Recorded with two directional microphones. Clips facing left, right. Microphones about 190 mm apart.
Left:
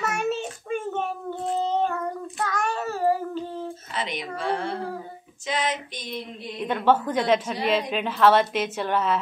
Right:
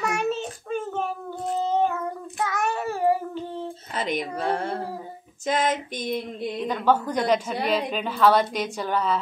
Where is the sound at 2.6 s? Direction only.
15° right (ahead or behind).